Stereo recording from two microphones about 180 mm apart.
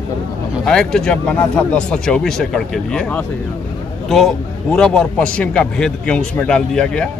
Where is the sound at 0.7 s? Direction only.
5° left (ahead or behind).